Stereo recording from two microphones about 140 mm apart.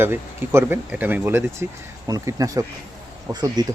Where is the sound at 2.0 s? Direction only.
25° right (ahead or behind).